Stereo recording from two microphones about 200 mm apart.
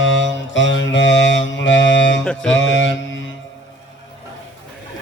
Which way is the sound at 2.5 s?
70° left (ahead or behind).